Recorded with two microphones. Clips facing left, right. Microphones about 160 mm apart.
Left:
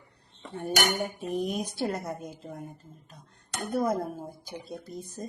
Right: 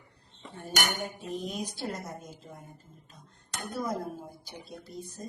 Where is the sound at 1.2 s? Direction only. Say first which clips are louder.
Left 5 dB; 55° left (ahead or behind).